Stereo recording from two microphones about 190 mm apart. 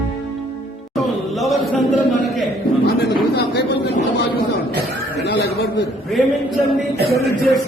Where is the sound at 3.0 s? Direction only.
60° left (ahead or behind).